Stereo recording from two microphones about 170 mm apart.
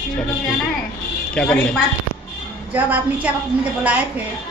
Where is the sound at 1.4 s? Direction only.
5° left (ahead or behind).